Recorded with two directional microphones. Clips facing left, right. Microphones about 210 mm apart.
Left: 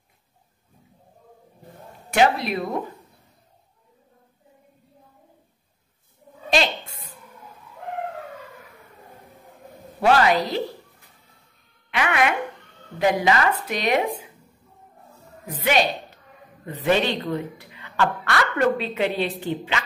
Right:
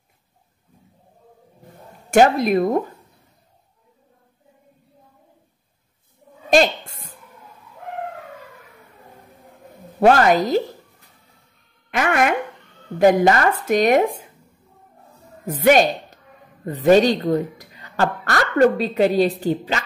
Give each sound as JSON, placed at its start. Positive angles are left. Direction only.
{"t": 2.0, "sound": "speech", "side_deg": -45}
{"t": 6.5, "sound": "a sound", "side_deg": -45}
{"t": 9.9, "sound": "speech", "side_deg": -45}
{"t": 11.9, "sound": "speech", "side_deg": -45}
{"t": 15.4, "sound": "a woman's voice", "side_deg": -45}